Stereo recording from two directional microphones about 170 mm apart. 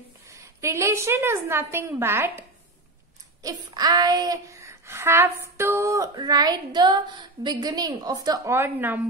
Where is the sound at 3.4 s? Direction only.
20° right (ahead or behind).